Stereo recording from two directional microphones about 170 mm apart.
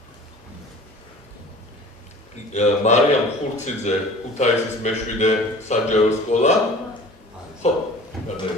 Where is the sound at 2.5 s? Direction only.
40° left (ahead or behind).